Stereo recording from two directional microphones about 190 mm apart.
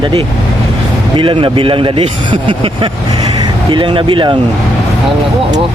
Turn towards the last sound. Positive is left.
turn(degrees=-25)  # may be behind; listen again after turning